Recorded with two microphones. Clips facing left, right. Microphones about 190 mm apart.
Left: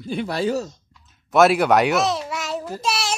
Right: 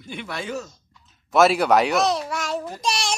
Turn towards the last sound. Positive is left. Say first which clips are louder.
# left 1 dB
turn(degrees=5)  # may be behind; listen again after turning